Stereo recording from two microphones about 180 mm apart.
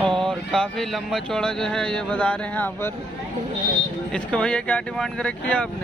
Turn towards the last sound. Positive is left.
turn(degrees=5)  # may be behind; listen again after turning